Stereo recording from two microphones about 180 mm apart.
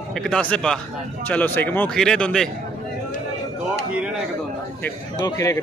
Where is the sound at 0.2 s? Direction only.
5° left (ahead or behind).